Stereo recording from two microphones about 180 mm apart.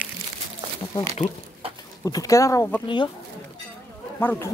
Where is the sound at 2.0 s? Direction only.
20° left (ahead or behind).